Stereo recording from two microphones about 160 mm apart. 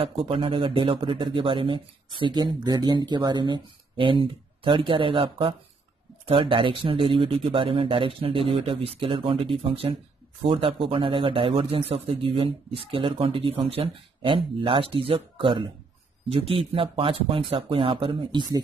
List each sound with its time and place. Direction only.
0.0 s a man's voice: 35° right (ahead or behind)